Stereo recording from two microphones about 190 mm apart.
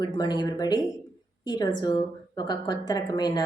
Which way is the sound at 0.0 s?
20° left (ahead or behind).